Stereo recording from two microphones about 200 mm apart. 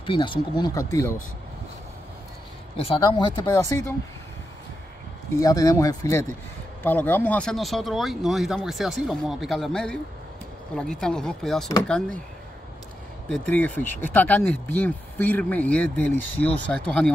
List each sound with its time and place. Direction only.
0.0 s speech: 25° left (ahead or behind)
2.8 s speech: 25° left (ahead or behind)
5.4 s speech: 15° left (ahead or behind); by 11.7 s centre (ahead or behind)
13.3 s speech: 5° left (ahead or behind)